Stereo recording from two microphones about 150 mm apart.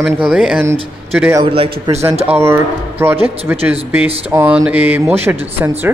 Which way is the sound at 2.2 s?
15° right (ahead or behind).